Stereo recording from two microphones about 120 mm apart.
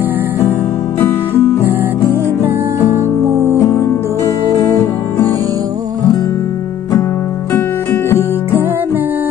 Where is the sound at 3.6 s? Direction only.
25° left (ahead or behind).